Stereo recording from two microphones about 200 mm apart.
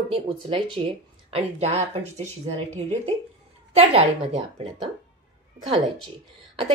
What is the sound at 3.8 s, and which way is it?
Speech, 30° right (ahead or behind).